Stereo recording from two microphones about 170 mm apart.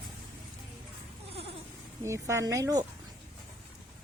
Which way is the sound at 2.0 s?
15° right (ahead or behind).